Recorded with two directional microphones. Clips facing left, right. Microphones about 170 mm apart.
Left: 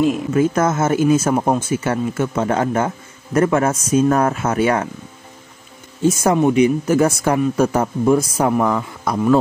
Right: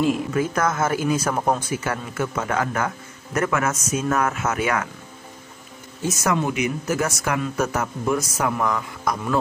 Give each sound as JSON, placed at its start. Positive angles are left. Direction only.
{"t": 0.0, "sound": "a man's voice", "side_deg": 25}
{"t": 6.0, "sound": "speech", "side_deg": 30}